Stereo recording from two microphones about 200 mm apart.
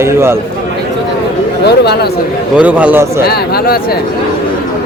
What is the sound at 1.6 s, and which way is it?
Speech, 55° left (ahead or behind).